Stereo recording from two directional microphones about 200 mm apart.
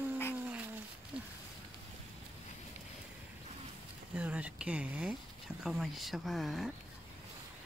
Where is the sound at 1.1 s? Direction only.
5° right (ahead or behind).